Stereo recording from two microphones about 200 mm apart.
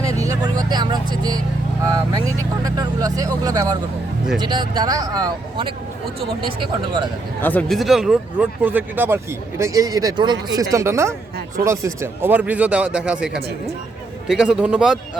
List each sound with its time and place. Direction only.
0.0 s vehicle: 15° right (ahead or behind)
1.8 s speech: 15° right (ahead or behind)
7.4 s a man's voice: 5° left (ahead or behind)